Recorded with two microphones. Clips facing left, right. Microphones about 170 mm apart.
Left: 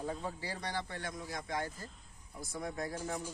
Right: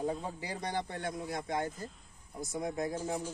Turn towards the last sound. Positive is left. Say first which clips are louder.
# right 4 dB
turn(degrees=-15)  # may be behind; listen again after turning